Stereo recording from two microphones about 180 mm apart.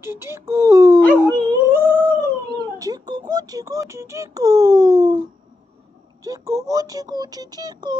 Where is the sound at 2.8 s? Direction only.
20° right (ahead or behind).